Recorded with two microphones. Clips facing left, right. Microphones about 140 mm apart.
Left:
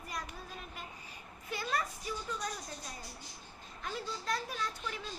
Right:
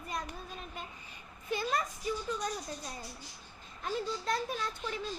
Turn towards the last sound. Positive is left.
turn(degrees=-25)  # may be behind; listen again after turning